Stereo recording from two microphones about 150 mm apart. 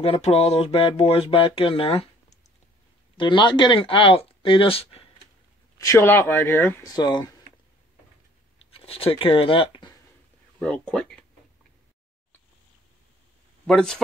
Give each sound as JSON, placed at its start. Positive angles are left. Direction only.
{"t": 0.0, "sound": "a sound", "side_deg": 45}
{"t": 5.8, "sound": "speech", "side_deg": 20}
{"t": 6.9, "sound": "speech", "side_deg": 30}
{"t": 8.7, "sound": "speech", "side_deg": 40}
{"t": 10.6, "sound": "speech", "side_deg": 5}
{"t": 13.7, "sound": "speech", "side_deg": 5}